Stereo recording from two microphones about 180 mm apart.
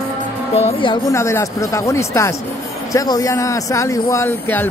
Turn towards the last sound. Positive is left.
turn(degrees=10)  # may be behind; listen again after turning